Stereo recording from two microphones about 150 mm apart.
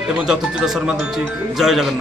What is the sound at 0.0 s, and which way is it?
Speech, 5° right (ahead or behind).